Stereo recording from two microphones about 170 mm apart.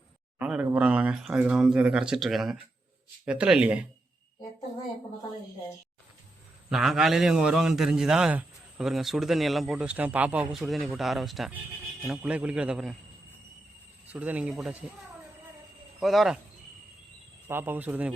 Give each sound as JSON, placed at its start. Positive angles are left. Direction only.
{"t": 0.3, "sound": "a man's voice", "side_deg": -5}
{"t": 6.7, "sound": "a man's voice", "side_deg": 0}
{"t": 14.1, "sound": "a man's voice", "side_deg": -10}
{"t": 16.0, "sound": "speech", "side_deg": 0}
{"t": 17.5, "sound": "a man's voice", "side_deg": -10}